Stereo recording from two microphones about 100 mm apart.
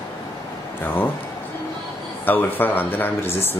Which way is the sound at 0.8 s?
20° left (ahead or behind).